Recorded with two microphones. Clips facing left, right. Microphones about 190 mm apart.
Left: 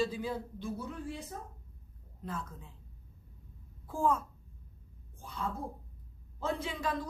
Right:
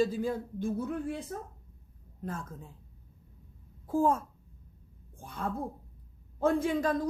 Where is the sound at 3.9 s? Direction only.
45° right (ahead or behind).